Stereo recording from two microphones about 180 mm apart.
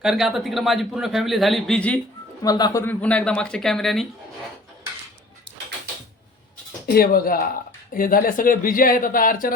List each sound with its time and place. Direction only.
0.0 s a man's voice: centre (ahead or behind)
2.4 s speech: 20° left (ahead or behind)
2.8 s a man's voice: 5° left (ahead or behind)
6.8 s speech: 55° left (ahead or behind)